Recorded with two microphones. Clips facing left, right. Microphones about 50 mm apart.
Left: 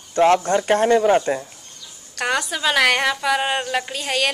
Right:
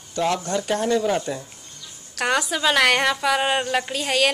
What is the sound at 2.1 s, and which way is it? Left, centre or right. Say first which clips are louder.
A woman's voice: even; centre.